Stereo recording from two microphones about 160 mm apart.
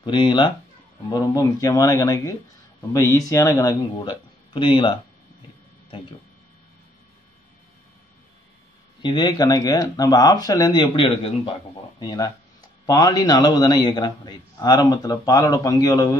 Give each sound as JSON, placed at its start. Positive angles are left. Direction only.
{"t": 0.0, "sound": "a man's voice", "side_deg": 30}
{"t": 9.0, "sound": "a man's voice", "side_deg": 25}